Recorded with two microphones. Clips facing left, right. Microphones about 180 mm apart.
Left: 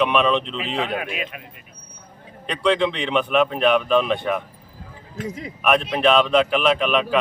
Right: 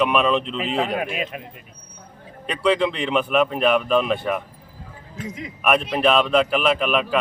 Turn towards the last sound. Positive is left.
turn(degrees=-5)  # may be behind; listen again after turning